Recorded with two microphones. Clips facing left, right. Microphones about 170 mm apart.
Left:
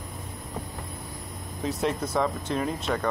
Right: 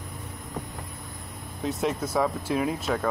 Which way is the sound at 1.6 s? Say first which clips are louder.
Even; centre (ahead or behind).